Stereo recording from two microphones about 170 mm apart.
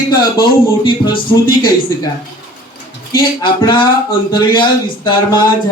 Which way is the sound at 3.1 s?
25° left (ahead or behind).